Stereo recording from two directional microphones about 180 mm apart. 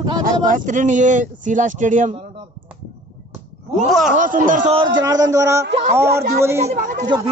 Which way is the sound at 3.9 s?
Centre (ahead or behind).